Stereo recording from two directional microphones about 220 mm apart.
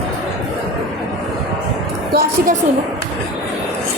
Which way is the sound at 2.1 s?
40° right (ahead or behind).